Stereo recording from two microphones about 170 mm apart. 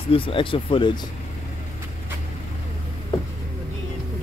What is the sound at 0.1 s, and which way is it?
Speech, 30° left (ahead or behind).